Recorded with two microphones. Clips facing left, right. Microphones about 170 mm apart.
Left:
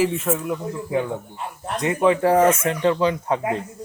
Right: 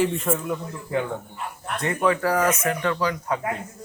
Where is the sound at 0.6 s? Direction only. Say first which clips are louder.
Left 3 dB; 15° left (ahead or behind).